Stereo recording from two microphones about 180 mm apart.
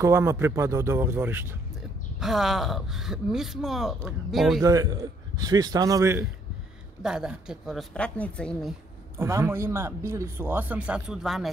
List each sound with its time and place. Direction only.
0.0 s speech: 15° right (ahead or behind)
2.1 s speech: centre (ahead or behind)
4.6 s a man's voice: 20° right (ahead or behind)
7.0 s speech: 5° right (ahead or behind)
9.2 s speech: 15° right (ahead or behind)